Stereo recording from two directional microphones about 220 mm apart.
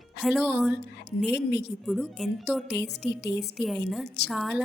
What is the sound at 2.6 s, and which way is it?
Speech, 50° left (ahead or behind).